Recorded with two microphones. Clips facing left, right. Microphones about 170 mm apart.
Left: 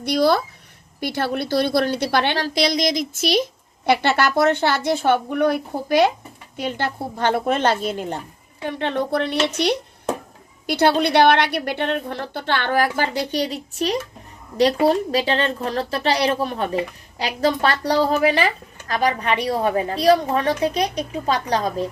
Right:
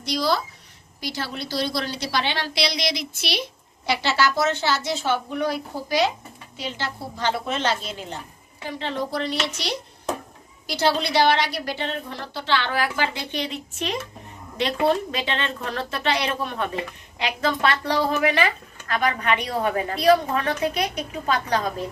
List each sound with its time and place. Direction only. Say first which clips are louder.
0.0 s a woman's voice: left 6 dB; 55° left (ahead or behind); by 21.8 s 35° left (ahead or behind)